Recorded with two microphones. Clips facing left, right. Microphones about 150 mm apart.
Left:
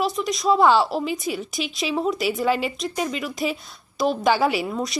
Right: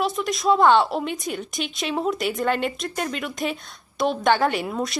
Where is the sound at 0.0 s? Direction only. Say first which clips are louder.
Even; centre (ahead or behind).